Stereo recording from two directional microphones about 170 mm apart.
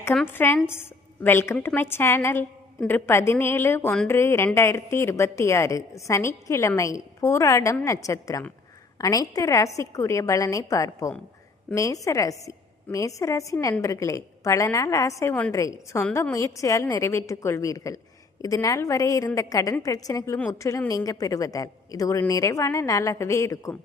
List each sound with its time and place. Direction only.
0.0 s a woman's voice: 10° left (ahead or behind)